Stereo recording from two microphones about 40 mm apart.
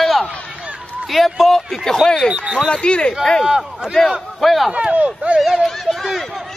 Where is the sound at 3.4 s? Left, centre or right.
Centre.